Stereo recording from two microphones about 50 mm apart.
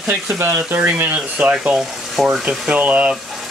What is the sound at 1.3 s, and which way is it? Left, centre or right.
Speech, right.